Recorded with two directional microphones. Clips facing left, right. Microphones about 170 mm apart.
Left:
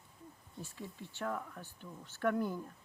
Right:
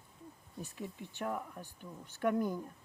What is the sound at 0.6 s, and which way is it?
Speech, 15° right (ahead or behind).